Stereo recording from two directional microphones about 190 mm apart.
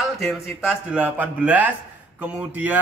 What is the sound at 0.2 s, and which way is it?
Speech, centre (ahead or behind).